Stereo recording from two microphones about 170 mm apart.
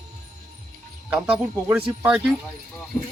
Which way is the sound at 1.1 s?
5° right (ahead or behind).